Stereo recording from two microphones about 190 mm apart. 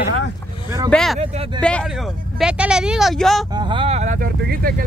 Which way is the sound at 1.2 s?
30° right (ahead or behind).